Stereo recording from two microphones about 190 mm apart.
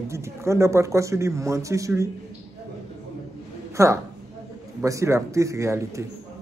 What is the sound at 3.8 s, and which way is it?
Speech, 15° right (ahead or behind).